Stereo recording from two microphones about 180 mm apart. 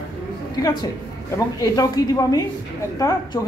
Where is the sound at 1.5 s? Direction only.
20° left (ahead or behind).